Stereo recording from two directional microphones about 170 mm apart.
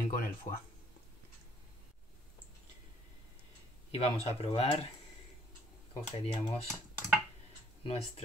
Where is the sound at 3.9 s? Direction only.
35° left (ahead or behind).